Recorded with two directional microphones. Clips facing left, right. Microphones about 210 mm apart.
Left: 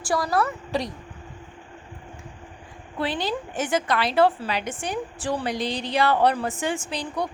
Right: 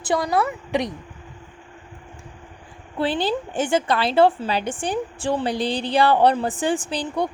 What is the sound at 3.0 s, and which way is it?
A woman's voice, 30° right (ahead or behind).